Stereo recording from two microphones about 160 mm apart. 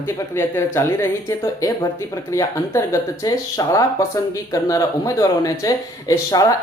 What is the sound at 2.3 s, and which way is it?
Speech, 20° left (ahead or behind).